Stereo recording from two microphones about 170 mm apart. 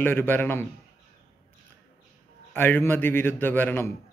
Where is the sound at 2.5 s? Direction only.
15° left (ahead or behind).